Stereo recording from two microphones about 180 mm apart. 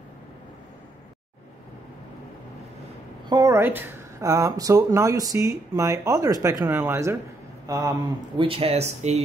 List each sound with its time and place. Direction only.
3.3 s speech: 20° right (ahead or behind)
8.5 s speech: 30° right (ahead or behind)